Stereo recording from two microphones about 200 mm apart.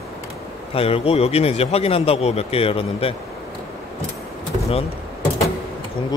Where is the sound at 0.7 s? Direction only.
30° left (ahead or behind).